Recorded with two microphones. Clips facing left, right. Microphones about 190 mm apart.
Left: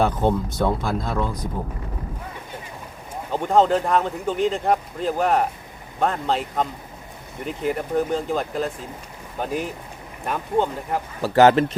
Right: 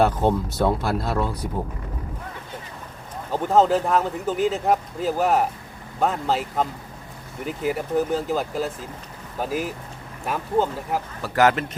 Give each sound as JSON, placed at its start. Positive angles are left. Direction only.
{"t": 0.0, "sound": "speech", "side_deg": -5}
{"t": 3.3, "sound": "speech", "side_deg": -5}
{"t": 11.2, "sound": "speech", "side_deg": 30}